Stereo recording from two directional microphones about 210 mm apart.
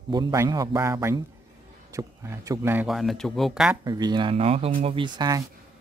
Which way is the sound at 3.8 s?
20° right (ahead or behind).